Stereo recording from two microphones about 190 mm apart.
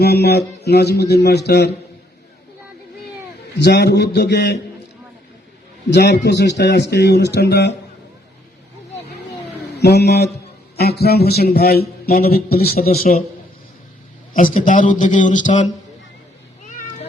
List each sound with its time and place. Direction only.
0.0 s a man's voice: 60° left (ahead or behind)
3.6 s a man's voice: 60° left (ahead or behind)
5.9 s a man's voice: 60° left (ahead or behind)
9.7 s a man's voice: 60° left (ahead or behind)
14.3 s a man's voice: 45° left (ahead or behind)
16.6 s cat: 40° left (ahead or behind)